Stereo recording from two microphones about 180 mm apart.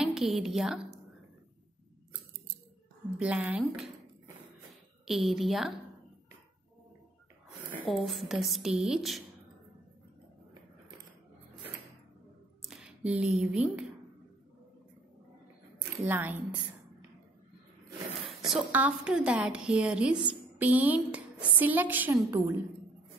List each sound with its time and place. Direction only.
0.0 s a woman's voice: centre (ahead or behind)
3.2 s a woman's voice: 5° right (ahead or behind)
5.0 s a woman's voice: centre (ahead or behind)
7.5 s a woman's voice: centre (ahead or behind)
12.6 s a woman's voice: 5° right (ahead or behind)
16.1 s a woman's voice: 10° right (ahead or behind)
18.4 s a woman's voice: 5° right (ahead or behind)